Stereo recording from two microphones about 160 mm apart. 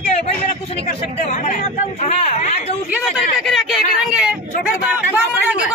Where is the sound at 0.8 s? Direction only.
45° left (ahead or behind).